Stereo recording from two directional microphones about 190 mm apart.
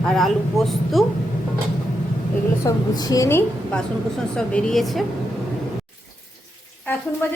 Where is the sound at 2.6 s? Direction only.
20° left (ahead or behind); by 5.1 s centre (ahead or behind).